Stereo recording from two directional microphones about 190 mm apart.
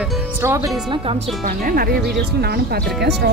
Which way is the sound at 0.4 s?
15° right (ahead or behind).